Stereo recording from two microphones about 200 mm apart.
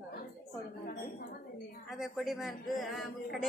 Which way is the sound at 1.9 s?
Centre (ahead or behind).